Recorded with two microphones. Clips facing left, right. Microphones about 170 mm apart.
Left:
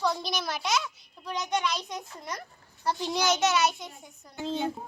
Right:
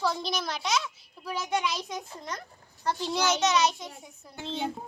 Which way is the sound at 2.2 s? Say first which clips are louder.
Even; 10° left (ahead or behind).